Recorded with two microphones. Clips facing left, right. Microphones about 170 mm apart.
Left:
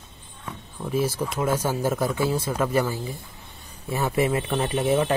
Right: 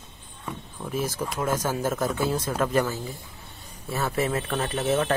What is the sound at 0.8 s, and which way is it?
Speech, 10° left (ahead or behind).